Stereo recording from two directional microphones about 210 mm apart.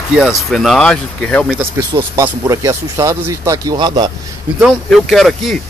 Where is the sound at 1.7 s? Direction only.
15° right (ahead or behind).